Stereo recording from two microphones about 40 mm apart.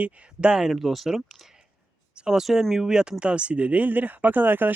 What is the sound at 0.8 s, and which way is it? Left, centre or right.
Speech, centre.